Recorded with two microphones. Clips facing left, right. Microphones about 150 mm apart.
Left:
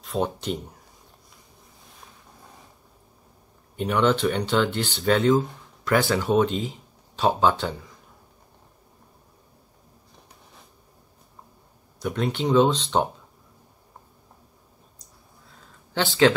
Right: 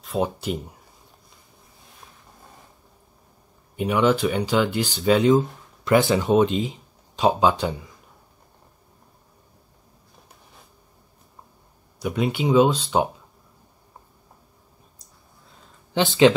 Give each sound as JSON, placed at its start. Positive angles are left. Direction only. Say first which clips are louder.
{"t": 0.0, "sound": "speech", "louder": "right 2 dB", "side_deg": -5}
{"t": 3.7, "sound": "speech", "louder": "right 2 dB", "side_deg": -10}
{"t": 12.0, "sound": "speech", "louder": "right 2 dB", "side_deg": -10}
{"t": 15.9, "sound": "speech", "louder": "right 3 dB", "side_deg": -20}